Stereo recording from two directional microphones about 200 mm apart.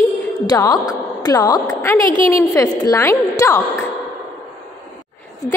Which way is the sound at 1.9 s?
25° right (ahead or behind).